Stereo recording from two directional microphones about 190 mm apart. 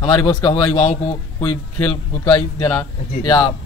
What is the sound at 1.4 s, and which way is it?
A man's voice, 10° left (ahead or behind).